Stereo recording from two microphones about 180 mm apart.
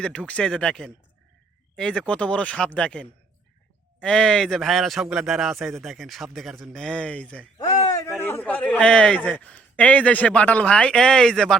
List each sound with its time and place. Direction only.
0.0 s a man's voice: 5° left (ahead or behind)
7.6 s a sound: 20° left (ahead or behind)
8.3 s a man's voice: 10° left (ahead or behind)